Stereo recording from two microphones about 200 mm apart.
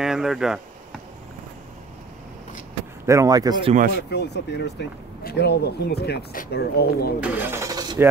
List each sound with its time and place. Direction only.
0.0 s speech: centre (ahead or behind)
3.1 s speech: 15° right (ahead or behind)
3.9 s speech: 55° left (ahead or behind)
7.2 s speech: 5° right (ahead or behind)